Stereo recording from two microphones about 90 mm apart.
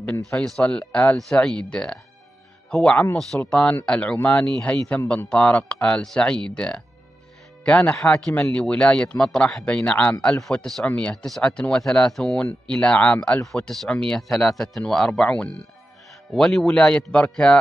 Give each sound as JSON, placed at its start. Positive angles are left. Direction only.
{"t": 0.5, "sound": "speech", "side_deg": 10}